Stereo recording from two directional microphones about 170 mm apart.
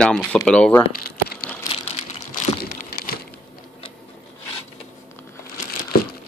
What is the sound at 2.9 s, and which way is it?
Crumpling, 65° left (ahead or behind).